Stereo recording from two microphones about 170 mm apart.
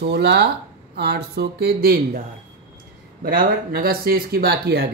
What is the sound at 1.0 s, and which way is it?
Speech, 70° right (ahead or behind).